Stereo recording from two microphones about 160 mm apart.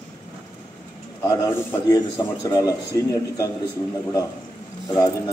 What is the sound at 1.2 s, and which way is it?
A man's voice, 25° left (ahead or behind).